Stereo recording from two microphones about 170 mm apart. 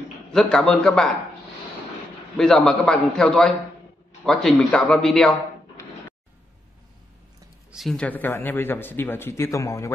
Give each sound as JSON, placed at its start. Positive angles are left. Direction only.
{"t": 0.3, "sound": "a man's voice", "side_deg": 5}
{"t": 2.3, "sound": "a man's voice", "side_deg": 0}
{"t": 7.7, "sound": "a man's voice", "side_deg": 0}